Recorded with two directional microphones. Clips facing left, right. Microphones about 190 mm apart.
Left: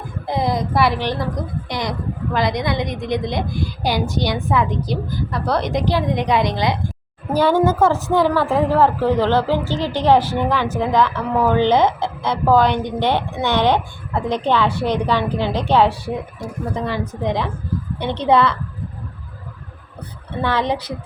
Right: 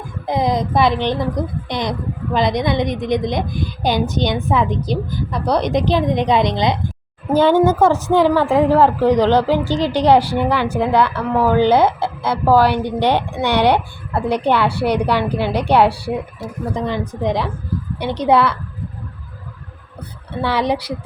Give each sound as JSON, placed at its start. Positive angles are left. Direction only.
{"t": 0.3, "sound": "a woman's voice", "side_deg": -15}
{"t": 20.4, "sound": "a woman's voice", "side_deg": -10}